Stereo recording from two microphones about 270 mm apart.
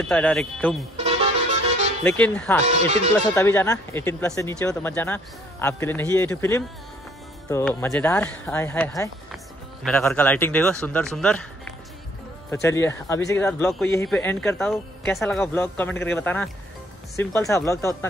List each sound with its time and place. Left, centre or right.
0.0 s speech: centre
0.9 s music: right
2.0 s speech: centre
2.6 s speech: right
3.3 s speech: centre